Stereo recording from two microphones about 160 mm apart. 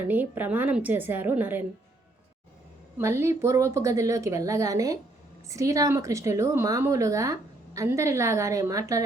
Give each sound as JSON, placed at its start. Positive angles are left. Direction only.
{"t": 0.1, "sound": "a woman's voice", "side_deg": -10}
{"t": 3.0, "sound": "speech", "side_deg": -15}